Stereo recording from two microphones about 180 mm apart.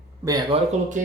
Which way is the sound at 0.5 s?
30° right (ahead or behind).